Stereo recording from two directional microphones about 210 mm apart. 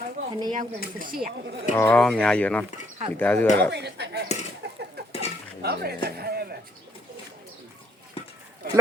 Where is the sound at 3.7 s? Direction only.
50° right (ahead or behind).